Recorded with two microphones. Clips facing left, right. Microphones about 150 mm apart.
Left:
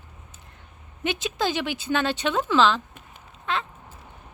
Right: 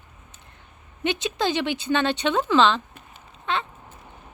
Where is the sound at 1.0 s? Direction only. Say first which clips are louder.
Right 2 dB; 5° left (ahead or behind).